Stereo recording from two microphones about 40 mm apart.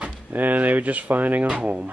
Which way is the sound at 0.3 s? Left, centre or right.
Right.